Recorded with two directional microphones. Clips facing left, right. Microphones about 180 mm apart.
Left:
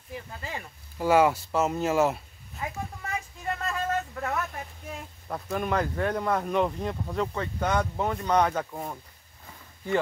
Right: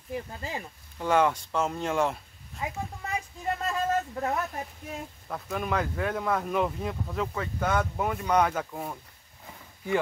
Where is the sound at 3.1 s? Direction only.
25° right (ahead or behind).